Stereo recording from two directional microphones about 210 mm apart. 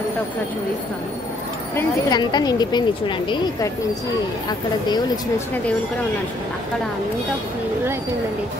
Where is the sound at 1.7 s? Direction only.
20° left (ahead or behind).